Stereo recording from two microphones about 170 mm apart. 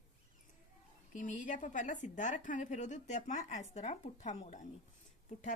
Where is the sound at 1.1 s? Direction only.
50° left (ahead or behind).